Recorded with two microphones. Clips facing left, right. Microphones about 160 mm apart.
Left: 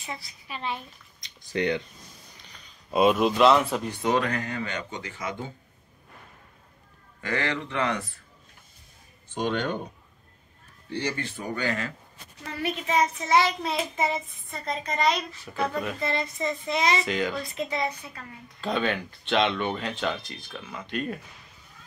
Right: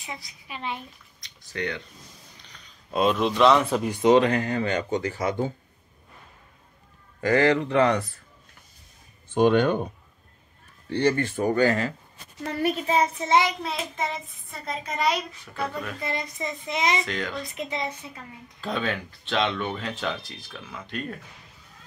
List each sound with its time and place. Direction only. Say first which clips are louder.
0.0 s a child's voice: left 1 dB; 15° right (ahead or behind)
1.2 s a sound: left 4 dB; 20° left (ahead or behind)
2.9 s speech: left 2 dB; 5° left (ahead or behind)
3.9 s speech: right 9 dB; 20° right (ahead or behind); by 5.5 s 40° right (ahead or behind)
7.2 s speech: right 9 dB; 40° right (ahead or behind)
9.3 s speech: right 8 dB; 55° right (ahead or behind)
10.9 s speech: right 8 dB; 55° right (ahead or behind); by 13.6 s 20° right (ahead or behind)
13.6 s speech: left 2 dB; centre (ahead or behind)
15.4 s a child's voice: left 2 dB; 10° left (ahead or behind)
16.0 s a child's voice: left 1 dB; 15° right (ahead or behind)
17.0 s a child's voice: left 3 dB; 5° left (ahead or behind)
17.4 s speech: left 1 dB; 20° right (ahead or behind)
18.6 s speech: left 2 dB; centre (ahead or behind)